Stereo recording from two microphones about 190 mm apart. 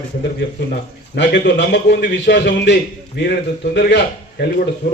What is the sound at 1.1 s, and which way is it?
A man's voice, 65° left (ahead or behind).